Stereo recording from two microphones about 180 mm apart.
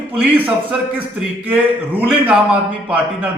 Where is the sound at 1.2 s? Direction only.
10° right (ahead or behind).